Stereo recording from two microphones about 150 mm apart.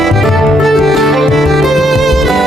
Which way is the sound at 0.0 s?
Centre (ahead or behind).